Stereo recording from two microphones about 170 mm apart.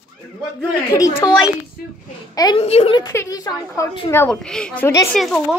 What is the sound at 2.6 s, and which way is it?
Speech, 35° left (ahead or behind).